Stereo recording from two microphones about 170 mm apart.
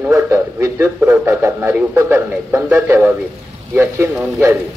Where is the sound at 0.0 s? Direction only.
15° right (ahead or behind).